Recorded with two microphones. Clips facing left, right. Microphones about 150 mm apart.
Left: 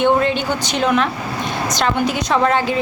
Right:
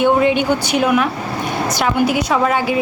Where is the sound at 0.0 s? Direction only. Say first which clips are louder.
Right 2 dB; 15° right (ahead or behind).